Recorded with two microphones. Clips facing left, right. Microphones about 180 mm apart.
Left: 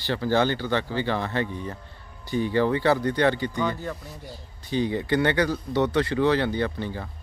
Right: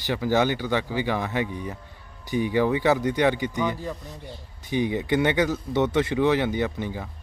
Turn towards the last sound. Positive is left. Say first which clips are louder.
# even
turn(degrees=-15)  # may be behind; listen again after turning